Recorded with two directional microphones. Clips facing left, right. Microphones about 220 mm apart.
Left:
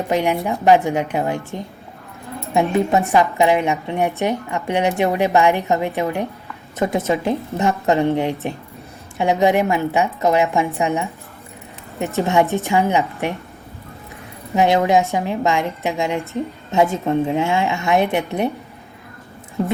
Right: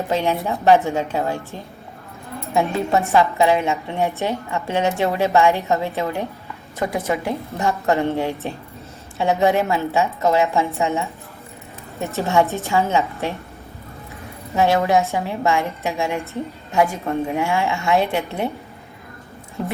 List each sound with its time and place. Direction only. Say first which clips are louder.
0.1 s a woman's voice: left 2 dB; 15° left (ahead or behind)
2.5 s a woman's voice: left 3 dB; 15° left (ahead or behind)
14.5 s a woman's voice: left 2 dB; 15° left (ahead or behind)